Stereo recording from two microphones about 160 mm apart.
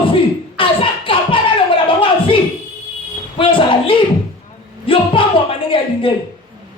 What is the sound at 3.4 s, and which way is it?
Speech, 35° left (ahead or behind).